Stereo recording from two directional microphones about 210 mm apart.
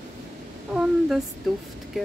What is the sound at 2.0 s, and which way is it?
Speech, centre (ahead or behind).